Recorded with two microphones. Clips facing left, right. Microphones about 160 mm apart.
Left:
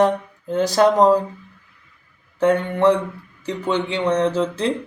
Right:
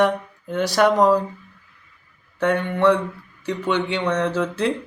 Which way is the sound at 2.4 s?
30° left (ahead or behind).